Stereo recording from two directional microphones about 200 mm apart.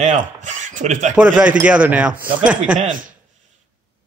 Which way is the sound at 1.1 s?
5° right (ahead or behind).